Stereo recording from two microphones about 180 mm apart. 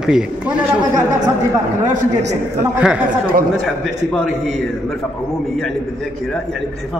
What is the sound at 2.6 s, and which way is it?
A man's voice, 5° right (ahead or behind).